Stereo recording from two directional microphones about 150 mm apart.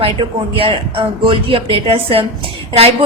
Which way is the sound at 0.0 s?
35° right (ahead or behind).